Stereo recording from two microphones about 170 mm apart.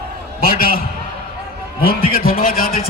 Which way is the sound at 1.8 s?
60° left (ahead or behind).